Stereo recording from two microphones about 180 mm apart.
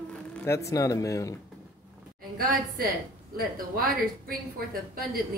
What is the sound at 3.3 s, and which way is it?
A woman's voice, 55° right (ahead or behind).